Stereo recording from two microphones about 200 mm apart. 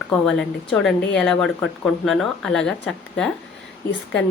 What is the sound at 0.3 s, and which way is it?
Speech, centre (ahead or behind).